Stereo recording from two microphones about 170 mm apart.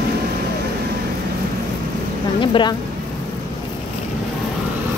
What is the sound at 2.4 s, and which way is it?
Speech, 30° left (ahead or behind).